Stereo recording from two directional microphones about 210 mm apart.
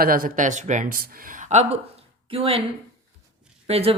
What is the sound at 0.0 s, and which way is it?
Speech, 40° right (ahead or behind).